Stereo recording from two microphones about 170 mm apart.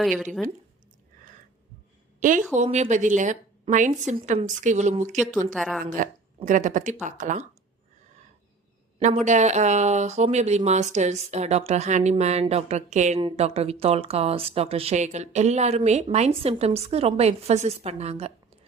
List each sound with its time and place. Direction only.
0.0 s speech: centre (ahead or behind)
2.5 s a woman's voice: 45° right (ahead or behind)
5.5 s speech: centre (ahead or behind)
5.8 s a woman's voice: 50° right (ahead or behind)
9.0 s speech: 45° right (ahead or behind)